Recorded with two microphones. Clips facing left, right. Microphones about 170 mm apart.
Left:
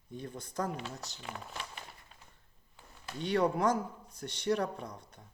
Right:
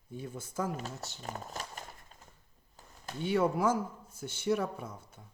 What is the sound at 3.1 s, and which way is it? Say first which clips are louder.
Speech: right 1 dB; 5° right (ahead or behind).